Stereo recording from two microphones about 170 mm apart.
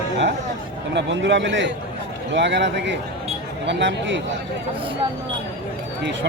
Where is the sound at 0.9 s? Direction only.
90° right.